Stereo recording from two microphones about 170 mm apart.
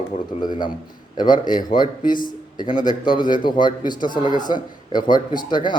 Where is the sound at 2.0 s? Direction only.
55° left (ahead or behind).